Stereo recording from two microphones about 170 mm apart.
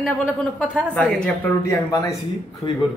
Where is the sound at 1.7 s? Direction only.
20° left (ahead or behind).